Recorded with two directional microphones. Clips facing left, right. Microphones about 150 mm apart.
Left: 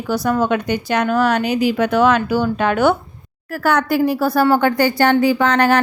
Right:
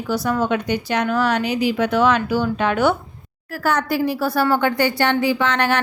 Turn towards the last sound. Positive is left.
turn(degrees=40)  # may be behind; listen again after turning